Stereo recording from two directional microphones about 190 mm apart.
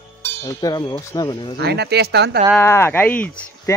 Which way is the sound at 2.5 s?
15° left (ahead or behind).